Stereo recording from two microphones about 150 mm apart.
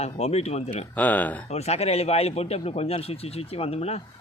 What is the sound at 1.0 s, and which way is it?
Speech, 10° left (ahead or behind).